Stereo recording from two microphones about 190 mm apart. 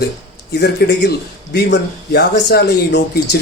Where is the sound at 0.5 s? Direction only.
60° left (ahead or behind).